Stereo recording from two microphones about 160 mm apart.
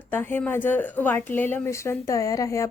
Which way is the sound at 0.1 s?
15° left (ahead or behind).